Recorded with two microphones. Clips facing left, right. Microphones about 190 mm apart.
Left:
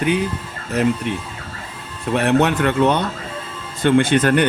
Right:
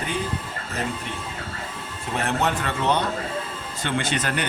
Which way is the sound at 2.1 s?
65° left (ahead or behind).